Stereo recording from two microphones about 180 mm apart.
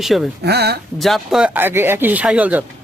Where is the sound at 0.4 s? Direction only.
65° right (ahead or behind).